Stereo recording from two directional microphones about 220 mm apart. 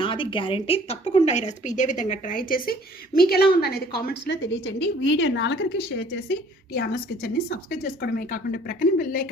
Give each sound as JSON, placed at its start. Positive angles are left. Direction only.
{"t": 0.0, "sound": "speech", "side_deg": 20}